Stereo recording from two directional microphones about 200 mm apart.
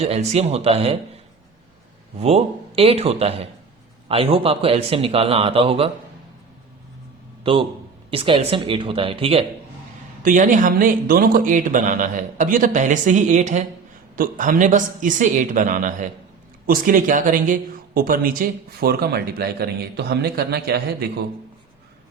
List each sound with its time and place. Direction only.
0.0 s speech: 30° right (ahead or behind)
2.1 s speech: 30° right (ahead or behind)
7.4 s a man's voice: 25° right (ahead or behind)
10.2 s speech: 40° right (ahead or behind)